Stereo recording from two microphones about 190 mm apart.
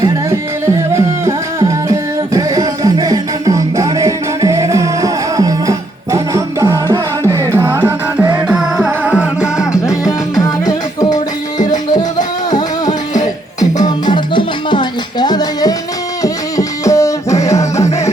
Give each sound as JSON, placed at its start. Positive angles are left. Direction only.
{"t": 0.0, "sound": "music", "side_deg": -15}
{"t": 9.4, "sound": "music", "side_deg": 15}
{"t": 12.5, "sound": "music", "side_deg": 20}
{"t": 16.2, "sound": "a sound", "side_deg": 15}